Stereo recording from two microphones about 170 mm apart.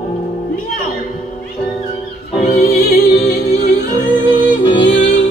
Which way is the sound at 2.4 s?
60° left (ahead or behind).